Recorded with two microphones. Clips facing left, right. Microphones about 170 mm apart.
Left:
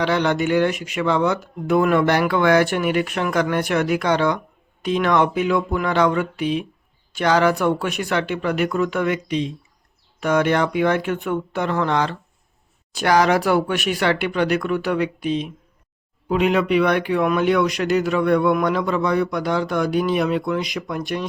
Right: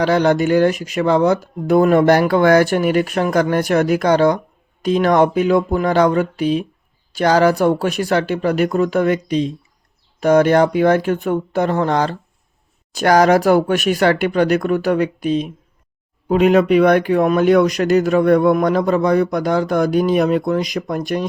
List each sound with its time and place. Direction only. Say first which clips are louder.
0.0 s speech: right 5 dB; 40° right (ahead or behind)